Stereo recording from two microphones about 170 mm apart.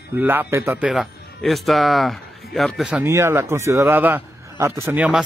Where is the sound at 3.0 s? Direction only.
15° right (ahead or behind).